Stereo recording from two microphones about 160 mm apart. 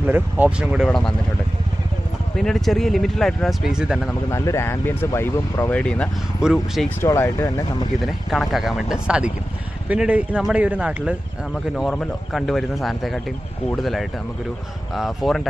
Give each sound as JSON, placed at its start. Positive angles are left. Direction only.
{"t": 0.0, "sound": "speech", "side_deg": -10}
{"t": 2.3, "sound": "speech", "side_deg": 0}
{"t": 4.3, "sound": "speech", "side_deg": 20}
{"t": 7.0, "sound": "speech", "side_deg": 15}
{"t": 8.0, "sound": "speech", "side_deg": 0}
{"t": 11.7, "sound": "speech", "side_deg": 5}